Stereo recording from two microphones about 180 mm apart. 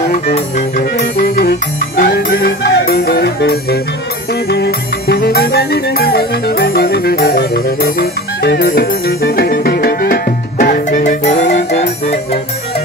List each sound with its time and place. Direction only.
0.9 s music: 55° left (ahead or behind)
11.5 s music: 40° left (ahead or behind)